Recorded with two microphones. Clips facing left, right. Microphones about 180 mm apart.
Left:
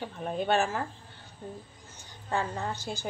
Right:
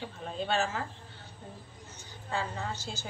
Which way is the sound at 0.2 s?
55° left (ahead or behind).